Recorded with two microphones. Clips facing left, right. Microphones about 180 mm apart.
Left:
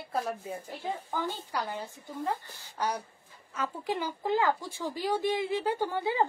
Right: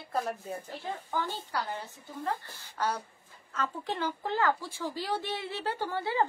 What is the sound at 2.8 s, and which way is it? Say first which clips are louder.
Speech: even; 15° left (ahead or behind).